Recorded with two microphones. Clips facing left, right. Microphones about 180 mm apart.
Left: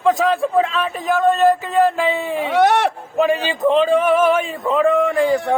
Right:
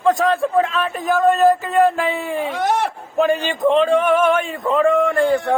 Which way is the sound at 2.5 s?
80° left.